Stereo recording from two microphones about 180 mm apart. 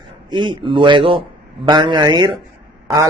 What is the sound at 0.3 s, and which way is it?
A man's voice, 25° right (ahead or behind).